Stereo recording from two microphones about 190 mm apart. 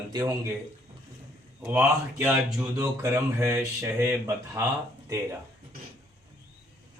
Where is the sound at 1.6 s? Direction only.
10° right (ahead or behind).